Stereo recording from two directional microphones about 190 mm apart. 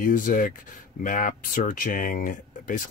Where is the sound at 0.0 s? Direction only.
45° left (ahead or behind).